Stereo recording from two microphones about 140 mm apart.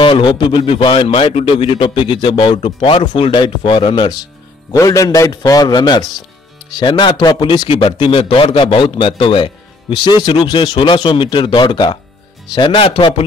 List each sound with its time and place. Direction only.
0.0 s a man's voice: 35° left (ahead or behind)
4.7 s a man's voice: 25° left (ahead or behind); by 13.1 s 40° left (ahead or behind)